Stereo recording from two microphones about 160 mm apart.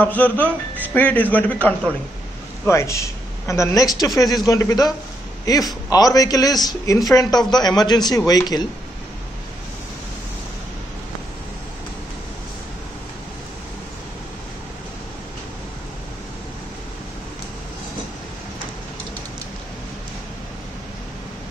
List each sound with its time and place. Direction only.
0.0 s a man's voice: 10° left (ahead or behind)